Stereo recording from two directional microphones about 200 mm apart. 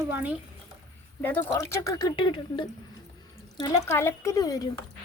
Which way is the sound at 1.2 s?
10° left (ahead or behind).